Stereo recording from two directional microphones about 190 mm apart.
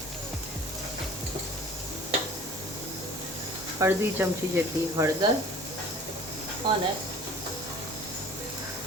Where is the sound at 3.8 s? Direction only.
10° right (ahead or behind).